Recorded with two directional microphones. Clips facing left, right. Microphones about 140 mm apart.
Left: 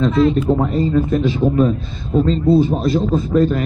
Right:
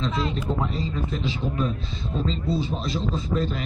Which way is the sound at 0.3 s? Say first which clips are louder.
Left 11 dB; 50° left (ahead or behind).